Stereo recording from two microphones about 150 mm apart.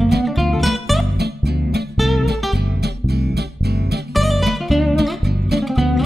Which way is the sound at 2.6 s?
90° right.